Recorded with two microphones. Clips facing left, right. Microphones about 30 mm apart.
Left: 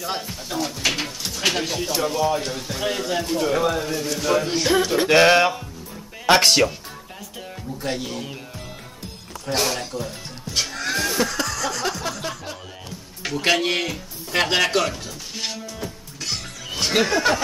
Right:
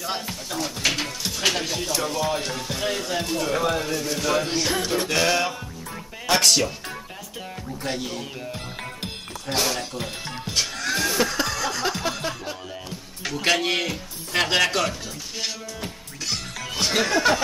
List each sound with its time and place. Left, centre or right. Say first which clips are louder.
0.0 s speech: left 1 dB; centre
4.9 s music: left 8 dB; left
7.8 s speech: left 2 dB; centre
9.5 s speech: left 2 dB; centre
10.5 s music: left 1 dB; centre
11.4 s chuckle: even; centre
13.2 s speech: left 2 dB; centre
16.8 s speech: left 1 dB; centre